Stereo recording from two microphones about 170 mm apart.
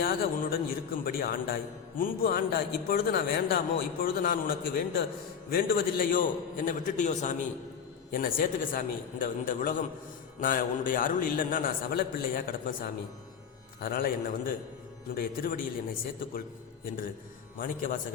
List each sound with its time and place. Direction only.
0.0 s a man's voice: 60° left (ahead or behind)
8.1 s a man's voice: 55° left (ahead or behind)
17.6 s a man's voice: 55° left (ahead or behind)